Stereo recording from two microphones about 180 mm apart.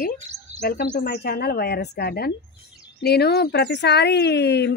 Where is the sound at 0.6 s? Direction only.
60° left (ahead or behind).